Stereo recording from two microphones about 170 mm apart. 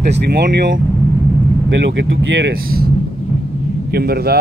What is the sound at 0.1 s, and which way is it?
Speech, 85° right.